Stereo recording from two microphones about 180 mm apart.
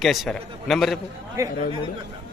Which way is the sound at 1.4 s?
15° right (ahead or behind).